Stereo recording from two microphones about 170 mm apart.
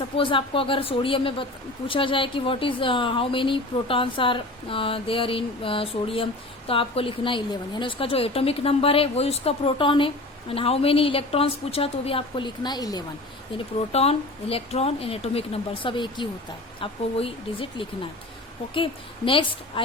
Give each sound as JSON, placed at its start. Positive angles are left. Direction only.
{"t": 0.2, "sound": "speech", "side_deg": 30}
{"t": 13.7, "sound": "speech", "side_deg": 35}